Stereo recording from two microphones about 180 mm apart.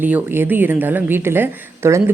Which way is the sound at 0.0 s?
10° right (ahead or behind).